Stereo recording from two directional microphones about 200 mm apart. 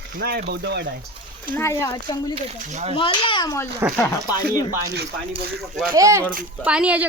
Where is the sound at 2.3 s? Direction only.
30° right (ahead or behind).